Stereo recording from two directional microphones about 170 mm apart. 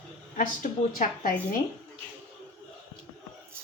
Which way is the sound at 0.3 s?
50° left (ahead or behind).